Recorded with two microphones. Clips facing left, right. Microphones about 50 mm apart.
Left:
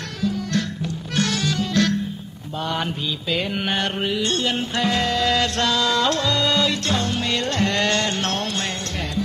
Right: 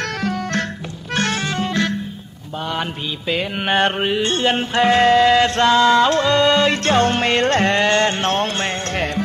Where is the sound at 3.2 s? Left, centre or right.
Right.